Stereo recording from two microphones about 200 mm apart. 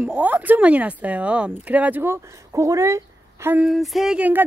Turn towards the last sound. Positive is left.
turn(degrees=-10)  # may be behind; listen again after turning